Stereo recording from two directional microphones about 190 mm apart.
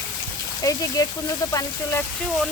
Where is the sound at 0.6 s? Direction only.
15° left (ahead or behind).